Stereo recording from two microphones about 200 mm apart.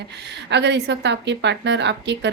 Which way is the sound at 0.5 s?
60° right (ahead or behind).